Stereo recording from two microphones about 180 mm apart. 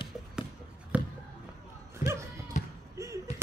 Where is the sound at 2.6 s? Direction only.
40° left (ahead or behind).